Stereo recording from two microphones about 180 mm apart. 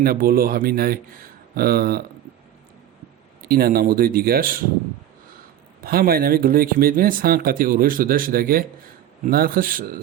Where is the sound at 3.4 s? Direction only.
55° right (ahead or behind).